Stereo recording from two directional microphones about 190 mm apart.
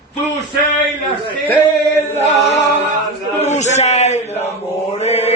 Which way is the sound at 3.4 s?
35° left (ahead or behind).